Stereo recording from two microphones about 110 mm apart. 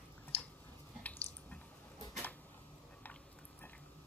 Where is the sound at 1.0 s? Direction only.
15° left (ahead or behind).